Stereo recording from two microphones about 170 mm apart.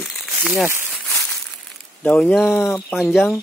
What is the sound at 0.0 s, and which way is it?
Crumpling, centre (ahead or behind).